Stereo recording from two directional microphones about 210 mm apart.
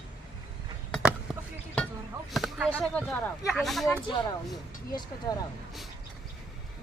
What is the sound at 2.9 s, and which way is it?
Speech, centre (ahead or behind).